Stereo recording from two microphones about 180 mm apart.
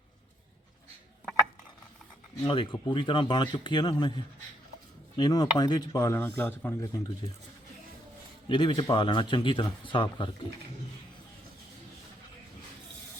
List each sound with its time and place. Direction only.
2.4 s speech: 30° left (ahead or behind)
5.1 s speech: 20° left (ahead or behind)
8.4 s speech: 25° left (ahead or behind)